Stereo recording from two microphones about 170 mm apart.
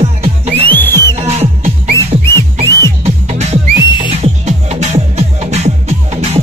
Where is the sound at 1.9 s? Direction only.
15° left (ahead or behind).